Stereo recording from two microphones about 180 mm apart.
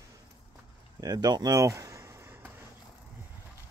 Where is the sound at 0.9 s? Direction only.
20° right (ahead or behind).